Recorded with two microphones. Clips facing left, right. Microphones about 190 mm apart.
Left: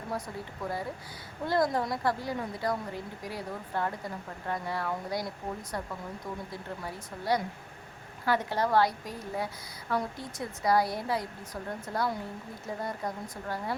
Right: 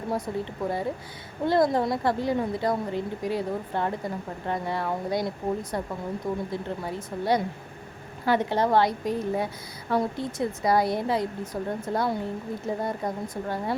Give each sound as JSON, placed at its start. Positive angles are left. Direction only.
{"t": 0.1, "sound": "a woman's voice", "side_deg": -25}